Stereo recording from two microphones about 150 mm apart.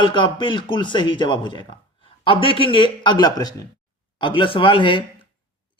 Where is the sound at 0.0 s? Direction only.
30° left (ahead or behind).